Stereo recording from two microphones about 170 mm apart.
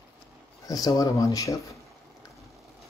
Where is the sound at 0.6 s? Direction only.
20° left (ahead or behind).